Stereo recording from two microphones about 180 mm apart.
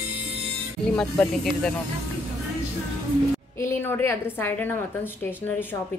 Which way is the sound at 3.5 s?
15° left (ahead or behind).